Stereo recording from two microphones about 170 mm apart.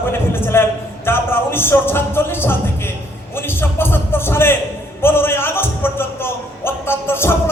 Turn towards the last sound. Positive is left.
turn(degrees=15)  # may be behind; listen again after turning